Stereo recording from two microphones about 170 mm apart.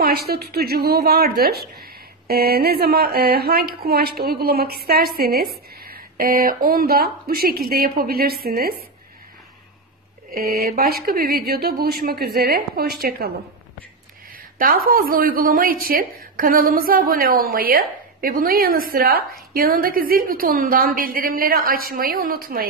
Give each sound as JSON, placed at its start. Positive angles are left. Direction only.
{"t": 0.0, "sound": "a woman's voice", "side_deg": -65}
{"t": 10.3, "sound": "a woman's voice", "side_deg": -65}
{"t": 14.3, "sound": "a woman's voice", "side_deg": -60}